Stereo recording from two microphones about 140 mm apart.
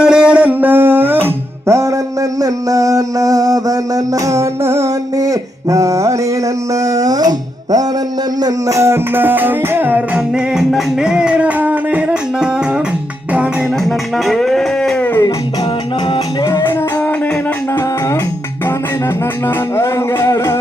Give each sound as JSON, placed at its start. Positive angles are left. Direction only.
{"t": 0.0, "sound": "music", "side_deg": -5}
{"t": 6.7, "sound": "a sound", "side_deg": -25}
{"t": 8.4, "sound": "music", "side_deg": -25}
{"t": 14.3, "sound": "a sound", "side_deg": 0}
{"t": 16.1, "sound": "music", "side_deg": 30}
{"t": 19.7, "sound": "music", "side_deg": 20}